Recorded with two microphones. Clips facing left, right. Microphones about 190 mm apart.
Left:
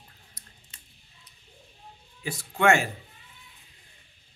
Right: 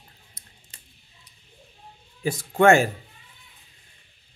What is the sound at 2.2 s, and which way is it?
Speech, 45° right (ahead or behind).